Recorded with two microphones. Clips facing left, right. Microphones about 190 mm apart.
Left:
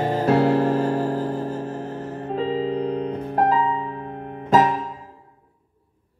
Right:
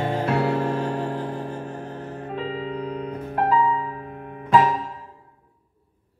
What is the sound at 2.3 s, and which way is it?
Music, 35° left (ahead or behind).